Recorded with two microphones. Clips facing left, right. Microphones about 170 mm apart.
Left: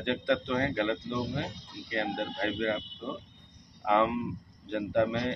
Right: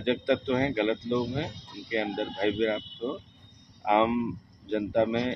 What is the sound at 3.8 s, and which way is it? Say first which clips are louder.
Speech: right 3 dB; 20° right (ahead or behind).